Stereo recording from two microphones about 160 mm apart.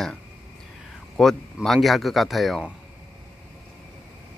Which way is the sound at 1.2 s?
Centre (ahead or behind).